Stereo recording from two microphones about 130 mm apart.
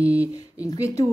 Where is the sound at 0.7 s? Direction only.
25° left (ahead or behind).